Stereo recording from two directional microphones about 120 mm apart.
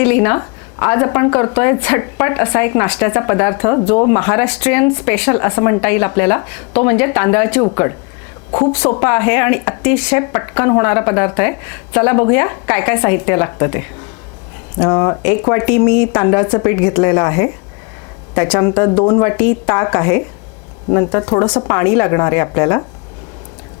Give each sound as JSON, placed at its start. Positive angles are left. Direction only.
{"t": 0.0, "sound": "a woman's voice", "side_deg": 20}